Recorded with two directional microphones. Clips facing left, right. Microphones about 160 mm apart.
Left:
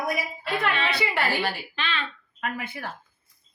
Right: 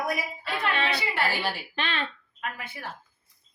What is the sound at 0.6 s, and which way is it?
Speech, 55° left (ahead or behind).